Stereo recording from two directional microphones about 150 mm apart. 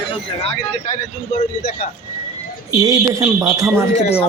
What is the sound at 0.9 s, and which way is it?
Speech, 60° left (ahead or behind).